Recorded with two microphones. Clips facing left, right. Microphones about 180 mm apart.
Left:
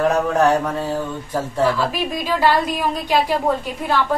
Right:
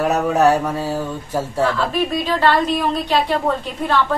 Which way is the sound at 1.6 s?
10° left (ahead or behind).